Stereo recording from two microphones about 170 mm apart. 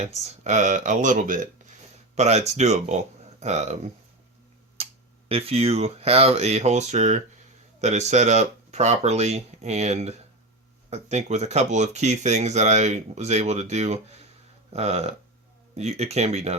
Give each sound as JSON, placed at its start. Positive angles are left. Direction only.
{"t": 0.0, "sound": "speech", "side_deg": -40}
{"t": 4.8, "sound": "a sound", "side_deg": -35}
{"t": 5.3, "sound": "speech", "side_deg": -35}